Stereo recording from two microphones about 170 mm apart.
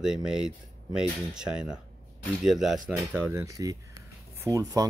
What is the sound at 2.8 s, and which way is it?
Speech, 10° right (ahead or behind).